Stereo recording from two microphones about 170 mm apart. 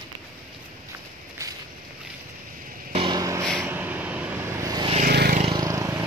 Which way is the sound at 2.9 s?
25° right (ahead or behind).